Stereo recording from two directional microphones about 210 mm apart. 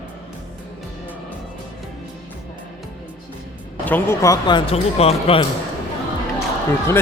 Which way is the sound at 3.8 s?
10° left (ahead or behind).